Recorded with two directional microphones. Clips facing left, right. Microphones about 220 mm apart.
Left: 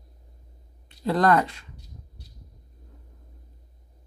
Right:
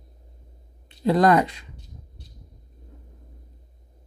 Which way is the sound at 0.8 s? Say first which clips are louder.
Right 3 dB; 20° right (ahead or behind).